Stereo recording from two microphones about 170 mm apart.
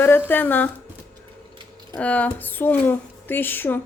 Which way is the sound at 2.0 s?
10° left (ahead or behind).